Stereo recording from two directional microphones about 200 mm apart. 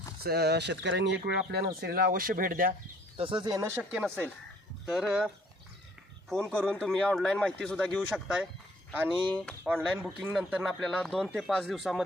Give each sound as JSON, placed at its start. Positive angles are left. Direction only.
{"t": 0.2, "sound": "speech", "side_deg": -50}
{"t": 3.2, "sound": "speech", "side_deg": -25}
{"t": 3.9, "sound": "speech", "side_deg": 0}
{"t": 9.6, "sound": "speech", "side_deg": -5}